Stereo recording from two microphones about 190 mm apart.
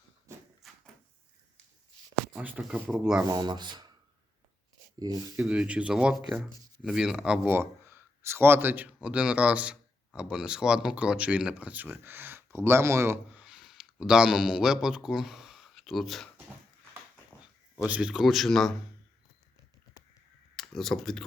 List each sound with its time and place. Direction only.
0.3 s a sound: 15° right (ahead or behind)
2.3 s speech: 5° right (ahead or behind)
3.2 s speech: 20° right (ahead or behind)
4.9 s speech: 20° right (ahead or behind)
5.5 s speech: 5° right (ahead or behind)
17.8 s speech: 5° right (ahead or behind)
20.6 s speech: centre (ahead or behind)